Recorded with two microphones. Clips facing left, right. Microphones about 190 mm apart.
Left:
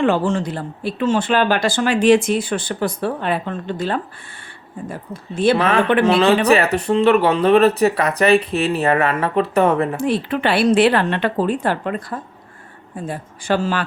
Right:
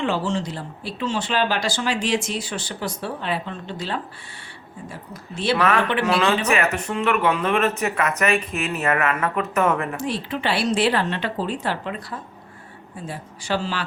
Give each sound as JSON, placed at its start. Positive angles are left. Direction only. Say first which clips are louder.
{"t": 0.0, "sound": "speech", "louder": "left 6 dB", "side_deg": 55}
{"t": 5.3, "sound": "speech", "louder": "left 7 dB", "side_deg": 50}
{"t": 5.5, "sound": "speech", "louder": "left 5 dB", "side_deg": 30}
{"t": 10.0, "sound": "speech", "louder": "left 7 dB", "side_deg": 60}